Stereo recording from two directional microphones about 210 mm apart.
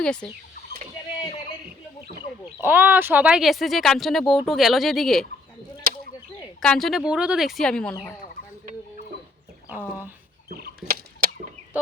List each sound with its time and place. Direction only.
0.0 s speech: 5° left (ahead or behind)
2.6 s speech: 10° right (ahead or behind)
6.6 s speech: centre (ahead or behind)
9.6 s speech: 10° right (ahead or behind)
10.5 s a sound: 45° right (ahead or behind)